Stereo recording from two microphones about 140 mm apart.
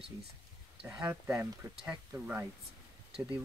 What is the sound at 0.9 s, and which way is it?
Speech, 20° right (ahead or behind).